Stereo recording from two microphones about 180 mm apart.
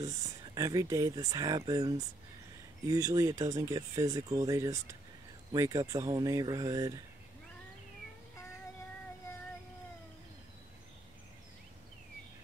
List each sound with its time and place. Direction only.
0.0 s speech: 20° right (ahead or behind)